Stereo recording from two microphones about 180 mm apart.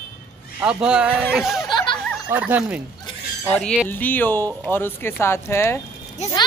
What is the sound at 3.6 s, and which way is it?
Speech, 5° left (ahead or behind).